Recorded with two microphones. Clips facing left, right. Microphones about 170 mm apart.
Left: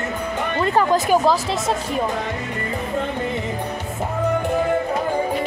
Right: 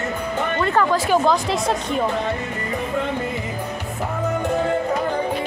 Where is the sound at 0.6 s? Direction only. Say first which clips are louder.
Left 2 dB; 20° left (ahead or behind).